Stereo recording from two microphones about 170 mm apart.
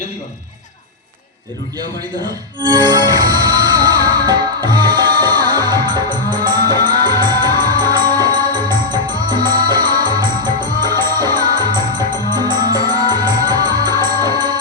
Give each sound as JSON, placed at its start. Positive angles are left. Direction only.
{"t": 2.6, "sound": "music", "side_deg": -25}